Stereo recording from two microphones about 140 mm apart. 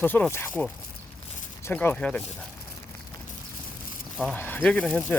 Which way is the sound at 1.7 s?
10° left (ahead or behind).